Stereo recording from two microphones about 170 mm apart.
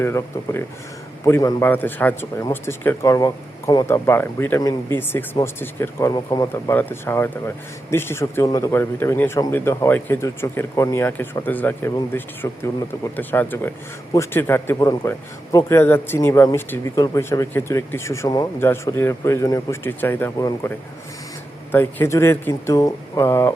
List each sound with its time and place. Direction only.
0.0 s speech: 15° left (ahead or behind)
6.1 s speech: 25° left (ahead or behind)
6.5 s speech: 10° left (ahead or behind)